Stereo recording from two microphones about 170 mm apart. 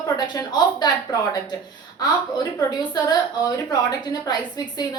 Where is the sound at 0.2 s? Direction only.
25° left (ahead or behind).